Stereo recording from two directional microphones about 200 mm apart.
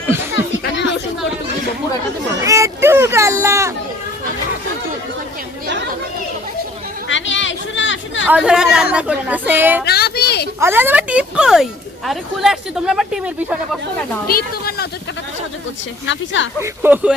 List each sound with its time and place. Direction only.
2.4 s a child's voice: 15° right (ahead or behind)
7.1 s speech: 70° left (ahead or behind)
8.3 s speech: 5° right (ahead or behind)
9.8 s a sound: 55° left (ahead or behind)
10.6 s speech: 10° right (ahead or behind)
14.3 s speech: 50° left (ahead or behind)
16.0 s speech: 70° left (ahead or behind)
16.6 s speech: 10° right (ahead or behind)